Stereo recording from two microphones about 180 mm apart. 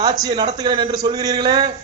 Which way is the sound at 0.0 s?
20° right (ahead or behind).